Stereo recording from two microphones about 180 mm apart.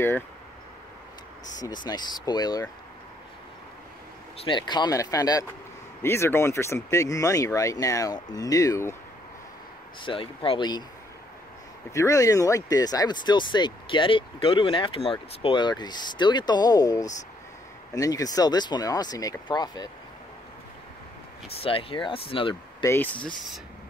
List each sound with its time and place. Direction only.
1.9 s speech: 25° left (ahead or behind)
4.4 s speech: 25° left (ahead or behind)
10.0 s speech: 30° left (ahead or behind)
11.9 s speech: 15° left (ahead or behind)
21.5 s speech: 30° left (ahead or behind)
22.8 s speech: 10° left (ahead or behind)